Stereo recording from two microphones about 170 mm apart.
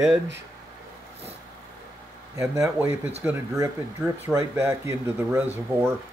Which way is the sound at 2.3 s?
15° right (ahead or behind).